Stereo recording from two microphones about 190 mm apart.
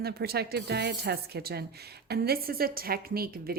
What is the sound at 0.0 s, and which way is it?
Speech, 55° right (ahead or behind).